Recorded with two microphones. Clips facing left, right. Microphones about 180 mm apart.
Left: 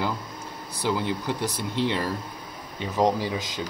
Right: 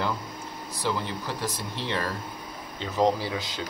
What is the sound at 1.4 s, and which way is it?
Speech, 15° left (ahead or behind).